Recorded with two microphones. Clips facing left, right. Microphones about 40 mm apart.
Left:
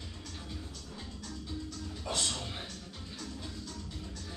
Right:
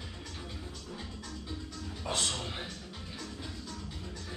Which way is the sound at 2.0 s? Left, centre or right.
Centre.